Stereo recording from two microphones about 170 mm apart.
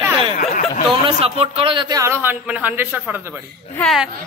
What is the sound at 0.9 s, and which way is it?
A man's voice, 35° right (ahead or behind).